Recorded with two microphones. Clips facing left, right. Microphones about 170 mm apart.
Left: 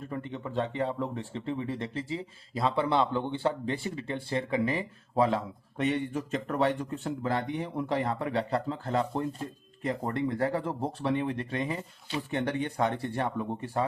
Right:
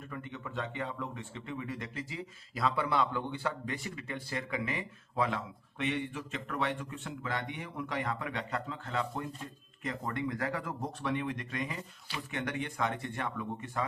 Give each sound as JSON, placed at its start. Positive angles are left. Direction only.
{"t": 0.0, "sound": "speech", "side_deg": 30}